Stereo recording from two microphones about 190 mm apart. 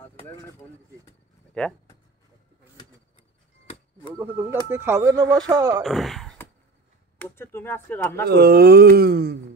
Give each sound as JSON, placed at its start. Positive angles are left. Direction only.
{"t": 0.1, "sound": "speech", "side_deg": 15}
{"t": 1.6, "sound": "speech", "side_deg": 5}
{"t": 4.2, "sound": "speech", "side_deg": -10}
{"t": 5.8, "sound": "speech", "side_deg": 0}
{"t": 7.2, "sound": "speech", "side_deg": 10}
{"t": 8.3, "sound": "speech", "side_deg": -55}